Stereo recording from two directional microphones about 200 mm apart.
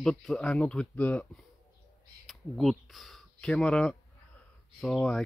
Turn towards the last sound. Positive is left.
turn(degrees=0)  # may be behind; listen again after turning